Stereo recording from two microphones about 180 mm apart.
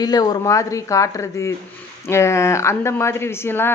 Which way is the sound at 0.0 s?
20° left (ahead or behind).